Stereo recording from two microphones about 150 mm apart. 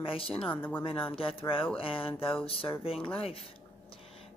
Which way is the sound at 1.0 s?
35° left (ahead or behind).